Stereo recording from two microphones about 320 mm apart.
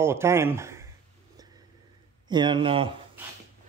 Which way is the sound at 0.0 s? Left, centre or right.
Centre.